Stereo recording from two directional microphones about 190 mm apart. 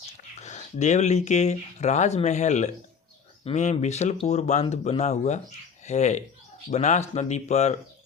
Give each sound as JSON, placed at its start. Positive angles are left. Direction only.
{"t": 0.4, "sound": "speech", "side_deg": 40}